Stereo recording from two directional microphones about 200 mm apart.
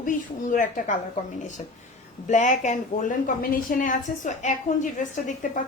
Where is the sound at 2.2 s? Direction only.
40° left (ahead or behind).